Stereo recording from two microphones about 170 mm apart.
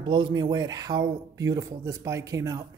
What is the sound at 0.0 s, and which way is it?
Speech, 30° right (ahead or behind).